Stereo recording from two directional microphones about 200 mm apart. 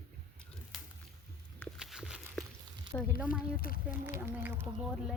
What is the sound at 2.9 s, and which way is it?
Speech, 10° left (ahead or behind).